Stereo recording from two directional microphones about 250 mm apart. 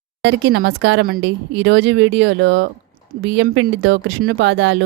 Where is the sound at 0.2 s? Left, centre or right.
Right.